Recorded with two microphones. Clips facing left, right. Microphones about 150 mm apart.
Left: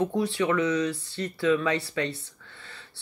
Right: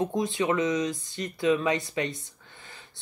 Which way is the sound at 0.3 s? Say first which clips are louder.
Left 1 dB; 20° right (ahead or behind).